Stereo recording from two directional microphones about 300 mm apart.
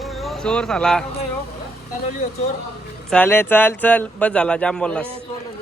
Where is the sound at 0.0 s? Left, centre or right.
Centre.